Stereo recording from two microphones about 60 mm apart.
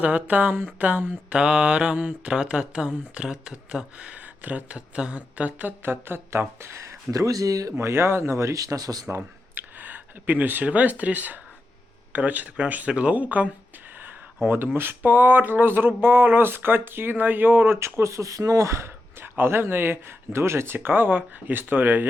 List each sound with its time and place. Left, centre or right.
0.0 s mantra: right
4.7 s speech: centre; by 7.7 s right
7.8 s speech: right
8.5 s speech: right
9.0 s a sound: right
9.7 s a sound: right
10.7 s mantra: right
14.4 s speech: right
17.7 s speech: right
19.2 s speech: right